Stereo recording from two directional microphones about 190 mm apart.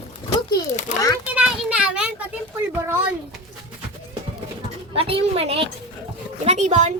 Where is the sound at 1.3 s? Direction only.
5° right (ahead or behind).